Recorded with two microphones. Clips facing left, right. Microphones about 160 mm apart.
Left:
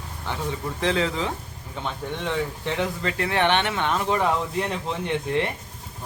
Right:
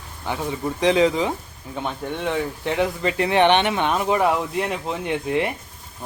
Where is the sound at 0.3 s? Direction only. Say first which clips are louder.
Right 4 dB; 10° right (ahead or behind).